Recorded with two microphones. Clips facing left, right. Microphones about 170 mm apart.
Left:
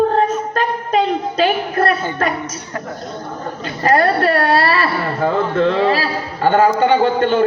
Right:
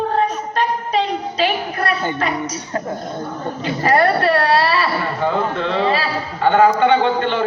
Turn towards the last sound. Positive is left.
turn(degrees=40)  # may be behind; listen again after turning